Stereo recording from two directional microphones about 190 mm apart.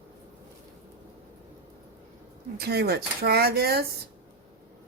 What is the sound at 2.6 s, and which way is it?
Speech, 55° right (ahead or behind).